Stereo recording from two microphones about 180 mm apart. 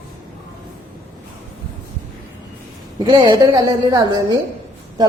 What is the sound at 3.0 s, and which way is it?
Speech, 25° right (ahead or behind).